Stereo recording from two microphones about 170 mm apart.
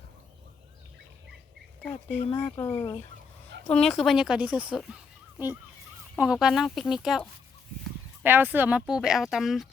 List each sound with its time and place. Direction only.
1.8 s speech: 10° left (ahead or behind)
2.5 s speech: 25° left (ahead or behind)
3.7 s speech: 5° left (ahead or behind)
6.1 s speech: 5° right (ahead or behind)
8.2 s speech: 10° right (ahead or behind)